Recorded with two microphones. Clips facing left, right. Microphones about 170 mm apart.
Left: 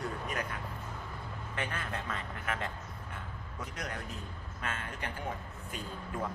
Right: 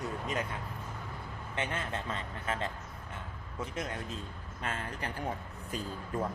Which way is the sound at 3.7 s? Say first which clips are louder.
Right 2 dB; 25° right (ahead or behind).